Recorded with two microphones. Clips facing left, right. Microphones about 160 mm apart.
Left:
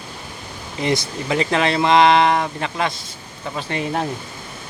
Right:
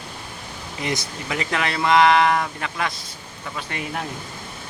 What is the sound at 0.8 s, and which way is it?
Speech, 30° left (ahead or behind).